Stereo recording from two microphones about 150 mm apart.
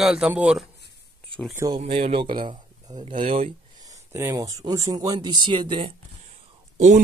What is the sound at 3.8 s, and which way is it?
Speech, 20° right (ahead or behind).